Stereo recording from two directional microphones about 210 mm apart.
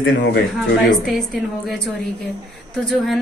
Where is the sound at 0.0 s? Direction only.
55° left (ahead or behind).